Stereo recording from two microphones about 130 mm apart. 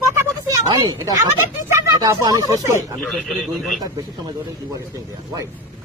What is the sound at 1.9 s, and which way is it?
Speech, 30° right (ahead or behind).